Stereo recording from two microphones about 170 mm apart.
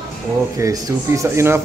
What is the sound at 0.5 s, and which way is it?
Speech, 20° right (ahead or behind).